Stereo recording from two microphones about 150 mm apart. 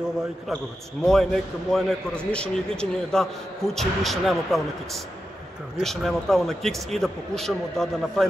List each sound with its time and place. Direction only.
1.0 s a man's voice: centre (ahead or behind)